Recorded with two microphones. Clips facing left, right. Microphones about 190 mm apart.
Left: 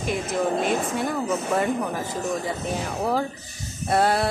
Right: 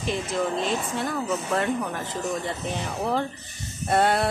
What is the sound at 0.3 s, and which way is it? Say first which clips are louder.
Speech: left 4 dB; 50° left (ahead or behind).